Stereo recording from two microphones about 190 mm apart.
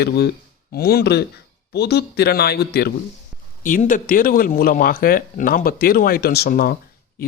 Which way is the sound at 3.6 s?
45° left (ahead or behind).